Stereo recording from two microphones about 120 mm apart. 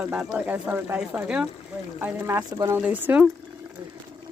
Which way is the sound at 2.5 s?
25° right (ahead or behind).